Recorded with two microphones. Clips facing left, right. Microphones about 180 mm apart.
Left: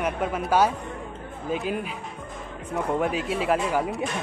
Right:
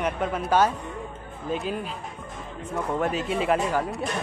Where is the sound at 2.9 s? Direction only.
10° left (ahead or behind).